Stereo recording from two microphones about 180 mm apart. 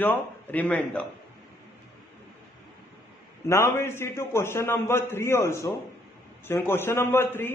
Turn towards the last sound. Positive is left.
turn(degrees=15)  # may be behind; listen again after turning